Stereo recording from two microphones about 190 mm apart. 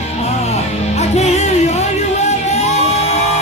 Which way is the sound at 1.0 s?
35° left (ahead or behind).